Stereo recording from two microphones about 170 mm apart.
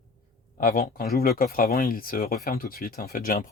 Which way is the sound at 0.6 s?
60° left (ahead or behind).